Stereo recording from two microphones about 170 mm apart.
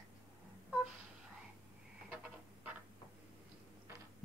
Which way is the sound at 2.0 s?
5° right (ahead or behind).